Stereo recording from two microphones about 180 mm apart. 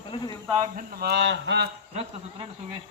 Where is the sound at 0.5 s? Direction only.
45° right (ahead or behind); by 1.6 s 75° right (ahead or behind).